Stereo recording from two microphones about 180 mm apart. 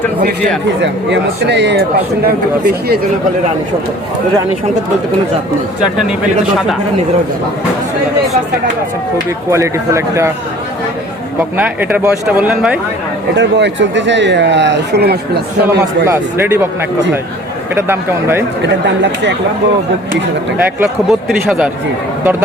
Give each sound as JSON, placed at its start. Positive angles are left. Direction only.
{"t": 0.8, "sound": "speech", "side_deg": -75}
{"t": 2.2, "sound": "speech", "side_deg": -60}
{"t": 9.5, "sound": "speech", "side_deg": -15}
{"t": 11.3, "sound": "speech", "side_deg": -10}
{"t": 13.3, "sound": "speech", "side_deg": -80}
{"t": 16.0, "sound": "speech", "side_deg": -15}
{"t": 17.7, "sound": "speech", "side_deg": -15}
{"t": 18.6, "sound": "speech", "side_deg": -75}
{"t": 20.7, "sound": "speech", "side_deg": 0}